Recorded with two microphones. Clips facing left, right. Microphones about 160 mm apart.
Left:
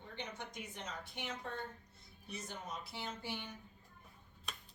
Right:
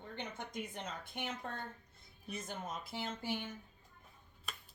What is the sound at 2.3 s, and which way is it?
A woman's voice, 50° right (ahead or behind).